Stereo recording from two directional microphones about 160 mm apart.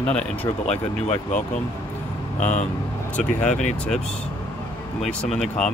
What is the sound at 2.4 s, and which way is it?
Speech, 50° left (ahead or behind).